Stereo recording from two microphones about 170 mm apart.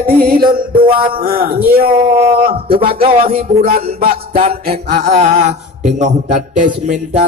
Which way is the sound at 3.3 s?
60° right (ahead or behind).